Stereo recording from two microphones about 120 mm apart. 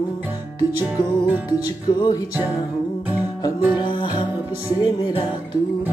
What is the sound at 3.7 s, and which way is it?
Music, 40° left (ahead or behind).